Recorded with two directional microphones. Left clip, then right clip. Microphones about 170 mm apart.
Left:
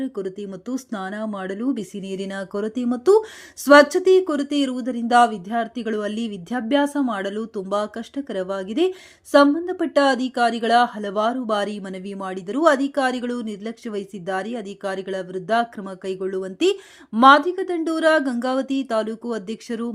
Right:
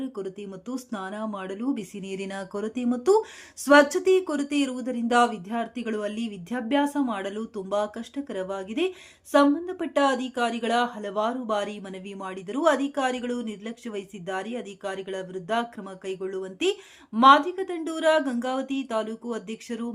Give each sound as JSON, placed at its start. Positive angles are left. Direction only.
{"t": 0.0, "sound": "speech", "side_deg": 20}